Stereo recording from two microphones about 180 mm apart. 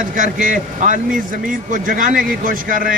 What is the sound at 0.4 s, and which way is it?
A man's voice, 45° right (ahead or behind).